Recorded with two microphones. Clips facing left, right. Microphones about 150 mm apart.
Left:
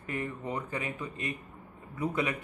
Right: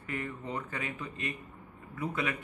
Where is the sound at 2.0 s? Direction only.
20° left (ahead or behind).